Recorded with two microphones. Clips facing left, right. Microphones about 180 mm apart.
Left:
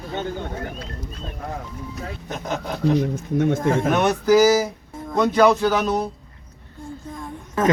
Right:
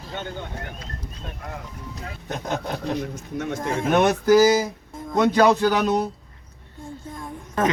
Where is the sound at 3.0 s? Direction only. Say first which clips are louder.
Left 8 dB; 50° left (ahead or behind).